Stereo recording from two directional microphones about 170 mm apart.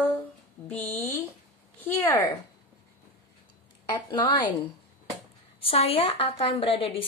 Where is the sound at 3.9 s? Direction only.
25° left (ahead or behind).